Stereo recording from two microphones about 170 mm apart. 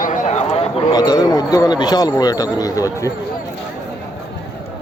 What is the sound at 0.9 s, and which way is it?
A man's voice, 25° left (ahead or behind).